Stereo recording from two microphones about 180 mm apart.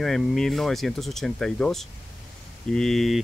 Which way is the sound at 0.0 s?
Centre (ahead or behind).